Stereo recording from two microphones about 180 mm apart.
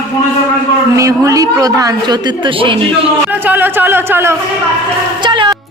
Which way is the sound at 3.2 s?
10° right (ahead or behind).